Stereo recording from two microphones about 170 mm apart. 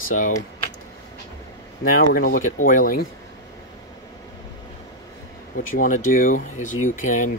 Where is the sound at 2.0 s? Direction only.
60° left (ahead or behind).